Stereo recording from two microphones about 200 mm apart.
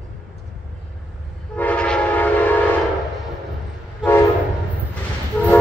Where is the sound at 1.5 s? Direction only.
5° left (ahead or behind).